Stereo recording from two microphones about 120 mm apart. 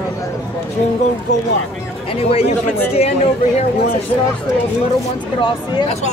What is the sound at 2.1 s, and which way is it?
Speech, 55° left (ahead or behind).